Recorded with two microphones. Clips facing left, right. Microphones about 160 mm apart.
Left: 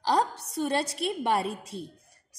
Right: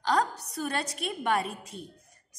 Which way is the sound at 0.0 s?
30° left (ahead or behind).